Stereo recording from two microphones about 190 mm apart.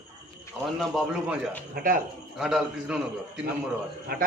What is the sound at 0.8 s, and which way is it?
Speech, centre (ahead or behind).